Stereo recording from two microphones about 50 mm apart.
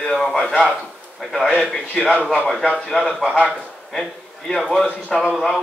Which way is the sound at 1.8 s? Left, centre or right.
Left.